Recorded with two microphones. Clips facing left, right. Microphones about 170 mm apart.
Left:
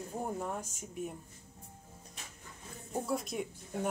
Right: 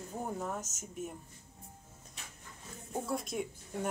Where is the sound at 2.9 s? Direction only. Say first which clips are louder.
Left 1 dB; centre (ahead or behind).